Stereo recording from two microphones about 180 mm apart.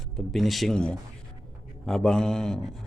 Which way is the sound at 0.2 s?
Centre (ahead or behind).